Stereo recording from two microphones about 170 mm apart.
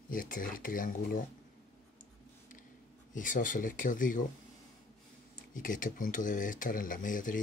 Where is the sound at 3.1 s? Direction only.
50° left (ahead or behind).